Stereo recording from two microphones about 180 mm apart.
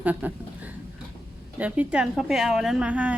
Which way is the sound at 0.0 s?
10° right (ahead or behind).